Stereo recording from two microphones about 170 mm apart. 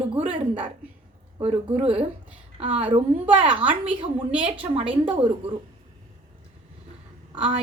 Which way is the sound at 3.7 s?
5° right (ahead or behind).